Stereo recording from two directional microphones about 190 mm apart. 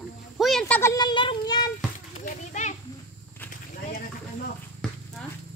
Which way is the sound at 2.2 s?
40° left (ahead or behind).